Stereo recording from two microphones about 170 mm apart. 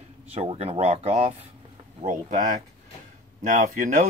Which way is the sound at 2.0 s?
50° right (ahead or behind).